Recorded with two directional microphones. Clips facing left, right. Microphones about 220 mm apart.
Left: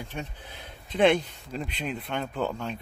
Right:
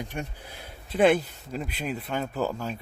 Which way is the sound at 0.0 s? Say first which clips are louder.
Right 2 dB; 10° right (ahead or behind).